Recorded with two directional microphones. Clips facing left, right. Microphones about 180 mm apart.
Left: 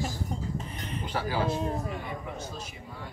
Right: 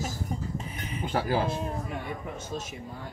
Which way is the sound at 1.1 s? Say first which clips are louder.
Right 5 dB; 45° right (ahead or behind).